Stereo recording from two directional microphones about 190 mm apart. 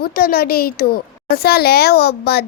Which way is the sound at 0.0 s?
50° left (ahead or behind).